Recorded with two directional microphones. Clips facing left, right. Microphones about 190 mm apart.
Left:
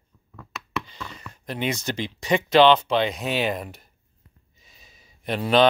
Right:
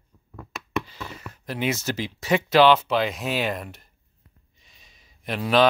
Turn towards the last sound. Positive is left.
turn(degrees=0)  # may be behind; listen again after turning